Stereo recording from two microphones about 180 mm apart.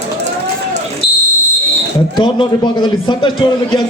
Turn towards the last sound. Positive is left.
turn(degrees=25)  # may be behind; listen again after turning